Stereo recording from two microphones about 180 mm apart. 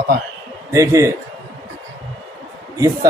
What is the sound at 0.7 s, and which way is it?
Speech, 15° right (ahead or behind).